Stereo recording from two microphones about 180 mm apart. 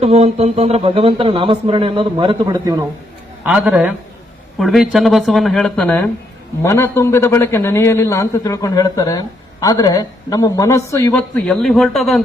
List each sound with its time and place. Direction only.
0.0 s speech: 35° right (ahead or behind); by 2.8 s 20° right (ahead or behind)
3.4 s a man's voice: 5° right (ahead or behind); by 11.2 s 15° left (ahead or behind)
11.4 s speech: centre (ahead or behind)